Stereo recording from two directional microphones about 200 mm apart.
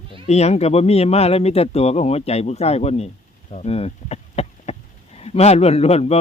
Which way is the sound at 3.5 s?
30° left (ahead or behind).